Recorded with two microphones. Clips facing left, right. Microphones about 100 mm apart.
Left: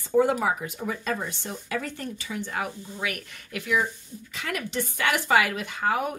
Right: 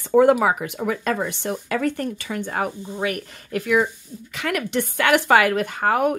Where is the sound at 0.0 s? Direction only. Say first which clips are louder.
Right 7 dB; 65° right (ahead or behind); by 3.6 s 35° right (ahead or behind).